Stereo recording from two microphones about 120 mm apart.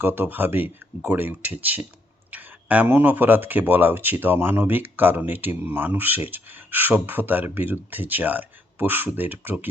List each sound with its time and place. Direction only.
0.0 s speech: 20° right (ahead or behind)